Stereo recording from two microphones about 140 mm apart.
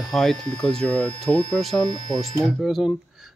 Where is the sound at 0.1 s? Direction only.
5° left (ahead or behind).